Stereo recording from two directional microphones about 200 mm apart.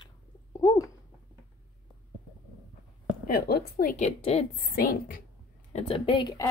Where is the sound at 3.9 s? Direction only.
35° left (ahead or behind).